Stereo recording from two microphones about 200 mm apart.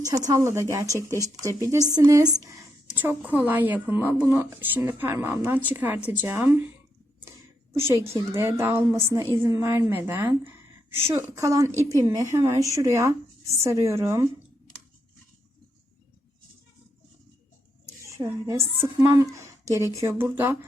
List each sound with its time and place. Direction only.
0.0 s a woman's voice: 15° right (ahead or behind)
7.7 s a woman's voice: 15° right (ahead or behind)
18.3 s a woman's voice: 15° right (ahead or behind)